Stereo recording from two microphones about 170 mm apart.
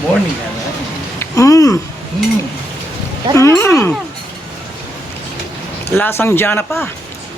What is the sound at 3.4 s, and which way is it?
Speech, 15° left (ahead or behind).